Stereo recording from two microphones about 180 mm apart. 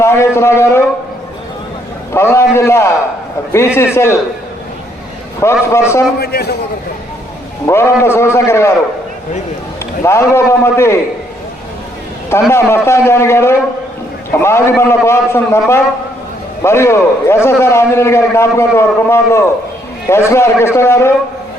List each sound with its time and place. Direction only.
0.0 s a man's voice: 15° left (ahead or behind)
2.1 s a man's voice: 15° left (ahead or behind)
5.4 s a man's voice: 15° left (ahead or behind)
6.1 s a man's voice: 60° left (ahead or behind)
7.7 s a man's voice: 15° left (ahead or behind)
10.0 s a man's voice: 15° left (ahead or behind)
12.3 s a man's voice: 15° left (ahead or behind)